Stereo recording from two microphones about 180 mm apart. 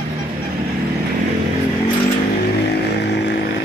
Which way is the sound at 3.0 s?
70° left (ahead or behind).